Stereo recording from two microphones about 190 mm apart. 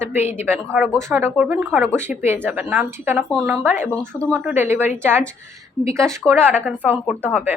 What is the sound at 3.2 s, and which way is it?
Speech, centre (ahead or behind).